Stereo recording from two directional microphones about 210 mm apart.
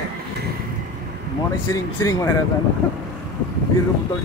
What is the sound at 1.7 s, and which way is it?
Speech, 15° left (ahead or behind).